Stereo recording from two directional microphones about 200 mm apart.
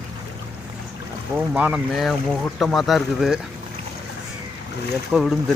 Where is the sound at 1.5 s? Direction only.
5° right (ahead or behind).